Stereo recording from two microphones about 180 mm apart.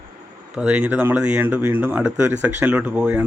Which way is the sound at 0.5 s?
5° right (ahead or behind).